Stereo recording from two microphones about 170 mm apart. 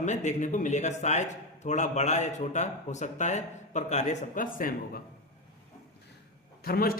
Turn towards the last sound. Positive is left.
turn(degrees=60)  # may be behind; listen again after turning